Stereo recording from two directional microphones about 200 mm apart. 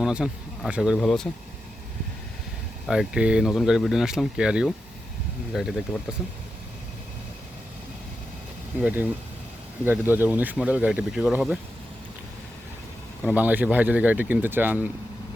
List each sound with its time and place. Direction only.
0.0 s speech: 5° right (ahead or behind)
2.8 s speech: 5° right (ahead or behind)
8.8 s speech: 10° right (ahead or behind)
13.2 s speech: 10° right (ahead or behind)